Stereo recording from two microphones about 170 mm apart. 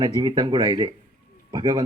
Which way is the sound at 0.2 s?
25° right (ahead or behind).